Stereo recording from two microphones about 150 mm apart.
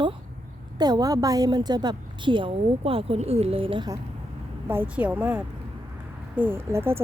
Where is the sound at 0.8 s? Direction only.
25° right (ahead or behind).